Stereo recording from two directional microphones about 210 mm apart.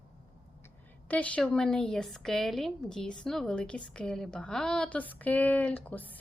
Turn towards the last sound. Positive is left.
turn(degrees=10)  # may be behind; listen again after turning